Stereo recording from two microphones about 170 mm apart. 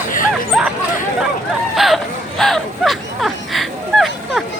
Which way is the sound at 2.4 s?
Centre (ahead or behind).